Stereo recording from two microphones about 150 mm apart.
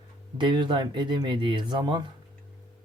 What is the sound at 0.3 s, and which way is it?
Speech, 30° right (ahead or behind).